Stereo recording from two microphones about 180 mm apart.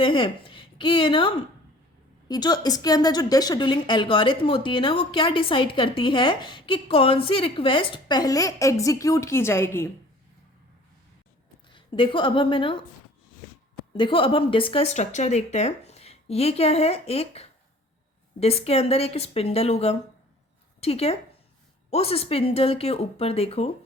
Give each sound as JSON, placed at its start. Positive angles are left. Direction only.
{"t": 0.0, "sound": "a woman's voice", "side_deg": 30}
{"t": 11.7, "sound": "a woman's voice", "side_deg": 25}
{"t": 13.9, "sound": "speech", "side_deg": 30}